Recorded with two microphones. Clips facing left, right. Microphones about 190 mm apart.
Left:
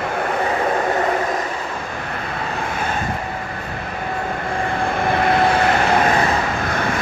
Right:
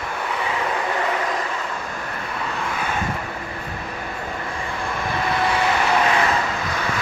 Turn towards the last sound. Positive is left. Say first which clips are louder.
# left 3 dB
turn(degrees=50)  # may be behind; listen again after turning